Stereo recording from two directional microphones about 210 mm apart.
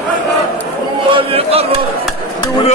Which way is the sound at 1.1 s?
25° right (ahead or behind).